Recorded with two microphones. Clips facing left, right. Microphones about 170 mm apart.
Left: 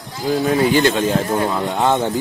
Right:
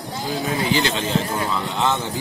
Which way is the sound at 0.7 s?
50° left (ahead or behind).